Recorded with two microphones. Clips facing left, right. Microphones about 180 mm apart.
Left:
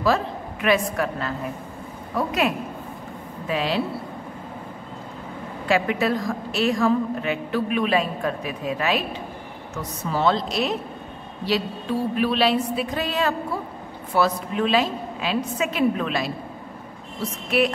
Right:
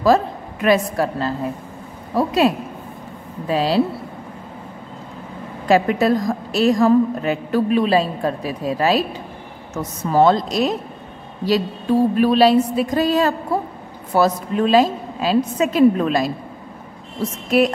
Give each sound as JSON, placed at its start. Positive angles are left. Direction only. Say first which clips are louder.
{"t": 0.0, "sound": "a woman's voice", "louder": "right 6 dB", "side_deg": -40}
{"t": 5.7, "sound": "a woman's voice", "louder": "right 6 dB", "side_deg": -40}
{"t": 12.2, "sound": "a woman's voice", "louder": "right 6 dB", "side_deg": -40}
{"t": 13.5, "sound": "a sound", "louder": "right 7 dB", "side_deg": -45}
{"t": 14.1, "sound": "a woman's voice", "louder": "right 4 dB", "side_deg": -40}
{"t": 17.5, "sound": "a woman's voice", "louder": "right 5 dB", "side_deg": -40}